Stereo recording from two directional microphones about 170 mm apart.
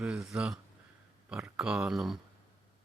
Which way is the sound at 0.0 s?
5° right (ahead or behind).